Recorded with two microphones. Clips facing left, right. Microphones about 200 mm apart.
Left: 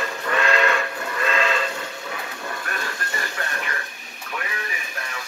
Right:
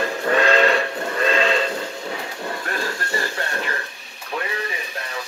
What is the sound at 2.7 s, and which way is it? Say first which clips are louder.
Music: right 5 dB; 30° right (ahead or behind).